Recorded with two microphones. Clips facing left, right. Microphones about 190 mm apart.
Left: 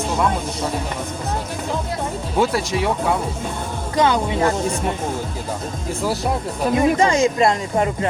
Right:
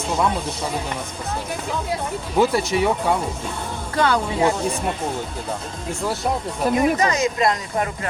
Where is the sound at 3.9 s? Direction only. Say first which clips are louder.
Left 2 dB; 20° left (ahead or behind).